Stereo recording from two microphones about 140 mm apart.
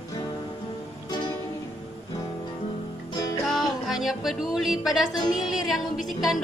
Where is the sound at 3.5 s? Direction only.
Centre (ahead or behind).